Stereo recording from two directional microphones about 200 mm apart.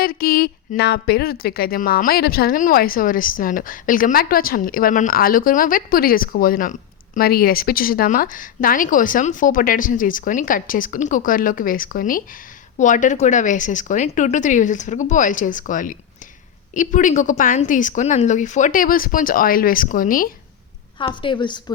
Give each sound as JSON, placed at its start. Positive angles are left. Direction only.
{"t": 0.0, "sound": "a woman's voice", "side_deg": 50}
{"t": 21.0, "sound": "a woman's voice", "side_deg": 25}